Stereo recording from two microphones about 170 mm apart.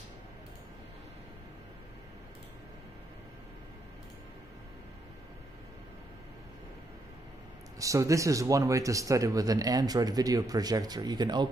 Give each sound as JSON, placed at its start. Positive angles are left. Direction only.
{"t": 7.8, "sound": "speech", "side_deg": -20}